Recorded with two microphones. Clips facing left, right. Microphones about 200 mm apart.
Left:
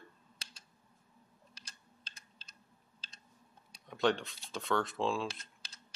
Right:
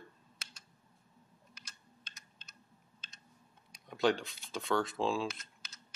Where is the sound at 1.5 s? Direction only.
30° left (ahead or behind).